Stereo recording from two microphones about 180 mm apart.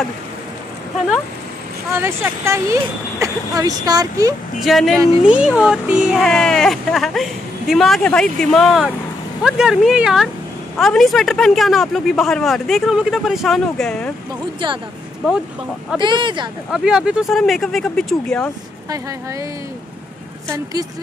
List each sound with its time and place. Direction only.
1.9 s speech: 15° right (ahead or behind)
4.6 s speech: centre (ahead or behind)
16.0 s speech: 25° right (ahead or behind)
16.7 s speech: 5° right (ahead or behind)
20.4 s speech: 15° right (ahead or behind)